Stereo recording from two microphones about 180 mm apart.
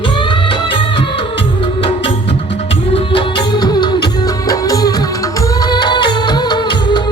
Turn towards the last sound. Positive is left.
turn(degrees=25)  # may be behind; listen again after turning